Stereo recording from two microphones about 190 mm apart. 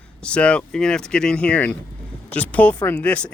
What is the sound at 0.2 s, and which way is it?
Speech, 5° left (ahead or behind).